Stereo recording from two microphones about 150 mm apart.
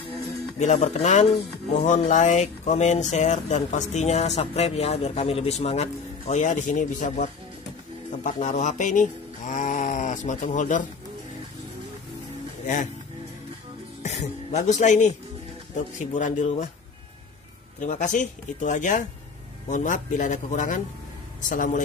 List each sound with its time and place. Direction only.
0.6 s speech: 50° left (ahead or behind)
14.0 s speech: 50° left (ahead or behind)
17.7 s speech: 55° left (ahead or behind)